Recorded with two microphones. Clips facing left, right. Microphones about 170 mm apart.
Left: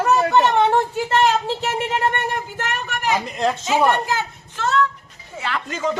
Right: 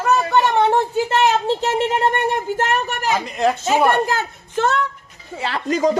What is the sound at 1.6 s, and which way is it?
Speech, 30° right (ahead or behind).